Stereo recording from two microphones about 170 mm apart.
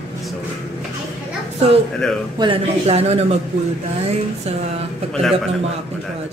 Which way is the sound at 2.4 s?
35° right (ahead or behind).